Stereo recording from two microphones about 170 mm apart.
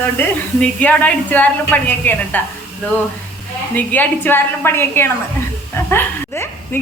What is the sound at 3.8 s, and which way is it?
A woman's voice, 10° left (ahead or behind).